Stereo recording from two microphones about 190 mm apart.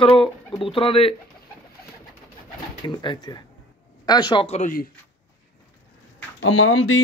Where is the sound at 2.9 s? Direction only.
25° left (ahead or behind); by 4.8 s 40° left (ahead or behind).